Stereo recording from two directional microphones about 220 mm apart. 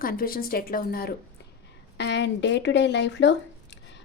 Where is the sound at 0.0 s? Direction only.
40° left (ahead or behind).